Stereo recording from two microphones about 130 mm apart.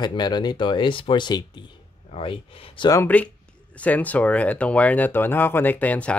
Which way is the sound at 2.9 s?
15° left (ahead or behind).